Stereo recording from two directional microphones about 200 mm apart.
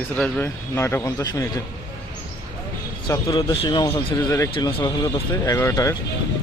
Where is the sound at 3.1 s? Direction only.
20° left (ahead or behind).